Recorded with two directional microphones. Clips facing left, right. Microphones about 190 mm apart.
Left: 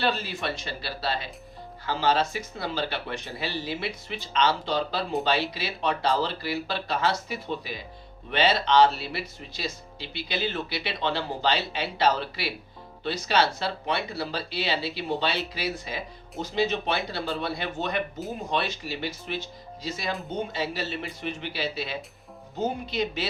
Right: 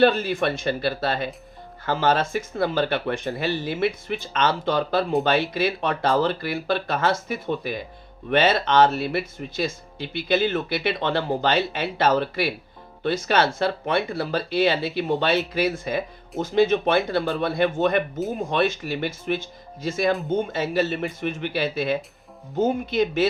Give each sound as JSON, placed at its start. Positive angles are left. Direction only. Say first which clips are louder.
{"t": 0.0, "sound": "speech", "louder": "right 9 dB", "side_deg": -50}